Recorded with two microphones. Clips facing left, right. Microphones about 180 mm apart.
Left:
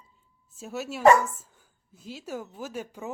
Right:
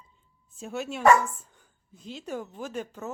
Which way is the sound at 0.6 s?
5° left (ahead or behind).